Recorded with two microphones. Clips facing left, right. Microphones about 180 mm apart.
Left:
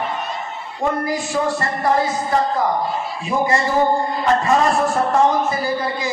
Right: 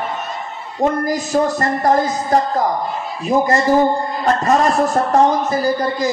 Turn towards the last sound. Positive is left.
turn(degrees=-40)  # may be behind; listen again after turning